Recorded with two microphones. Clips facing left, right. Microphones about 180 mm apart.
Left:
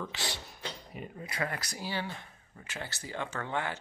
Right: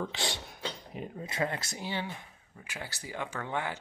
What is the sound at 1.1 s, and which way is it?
Speech, 25° right (ahead or behind).